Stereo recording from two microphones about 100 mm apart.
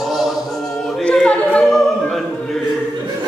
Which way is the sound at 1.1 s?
10° left (ahead or behind).